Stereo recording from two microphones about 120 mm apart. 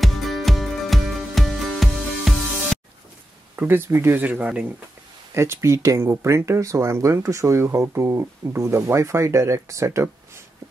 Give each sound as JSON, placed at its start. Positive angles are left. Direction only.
{"t": 0.0, "sound": "music", "side_deg": 0}
{"t": 3.5, "sound": "speech", "side_deg": -20}
{"t": 5.3, "sound": "speech", "side_deg": -25}